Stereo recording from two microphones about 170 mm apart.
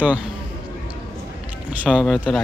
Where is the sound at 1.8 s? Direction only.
5° right (ahead or behind).